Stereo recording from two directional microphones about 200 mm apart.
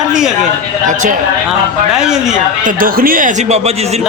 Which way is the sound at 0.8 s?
40° right (ahead or behind).